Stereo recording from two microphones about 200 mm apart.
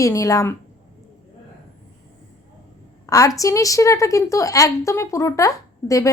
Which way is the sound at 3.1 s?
15° left (ahead or behind).